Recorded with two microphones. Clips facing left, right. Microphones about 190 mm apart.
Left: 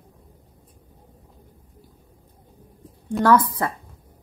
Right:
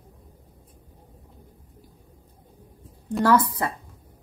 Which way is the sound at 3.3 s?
30° right (ahead or behind).